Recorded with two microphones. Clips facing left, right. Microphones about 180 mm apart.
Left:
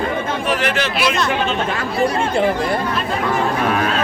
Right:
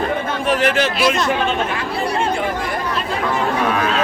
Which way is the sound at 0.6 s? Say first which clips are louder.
Right 3 dB; 40° right (ahead or behind).